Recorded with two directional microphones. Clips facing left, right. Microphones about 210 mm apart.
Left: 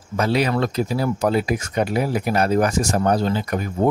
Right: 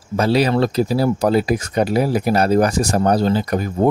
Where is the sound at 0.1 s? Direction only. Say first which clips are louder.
Right 4 dB; 35° right (ahead or behind).